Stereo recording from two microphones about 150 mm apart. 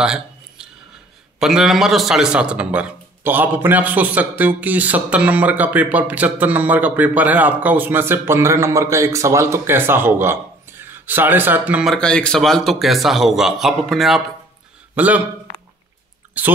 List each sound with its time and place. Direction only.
0.0 s a sound: 5° right (ahead or behind)
1.4 s a man's voice: 5° right (ahead or behind)
11.9 s a man's voice: 5° left (ahead or behind); by 15.2 s 10° right (ahead or behind)
16.4 s a man's voice: 10° right (ahead or behind)